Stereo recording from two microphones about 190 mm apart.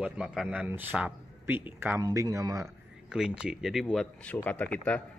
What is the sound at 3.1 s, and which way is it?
A man's voice, 5° right (ahead or behind).